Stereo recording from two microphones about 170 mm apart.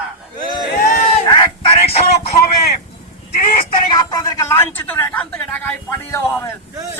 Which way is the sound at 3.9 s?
20° left (ahead or behind).